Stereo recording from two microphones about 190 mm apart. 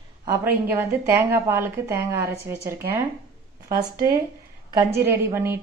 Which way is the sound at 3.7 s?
50° right (ahead or behind).